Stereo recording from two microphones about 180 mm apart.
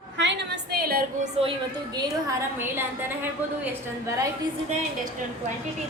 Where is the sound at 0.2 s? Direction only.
80° right; by 1.3 s 55° right (ahead or behind).